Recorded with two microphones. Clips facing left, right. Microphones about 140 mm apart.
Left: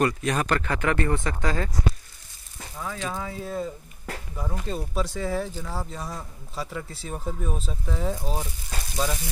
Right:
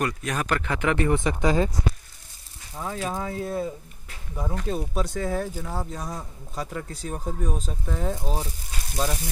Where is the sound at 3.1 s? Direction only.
40° right (ahead or behind).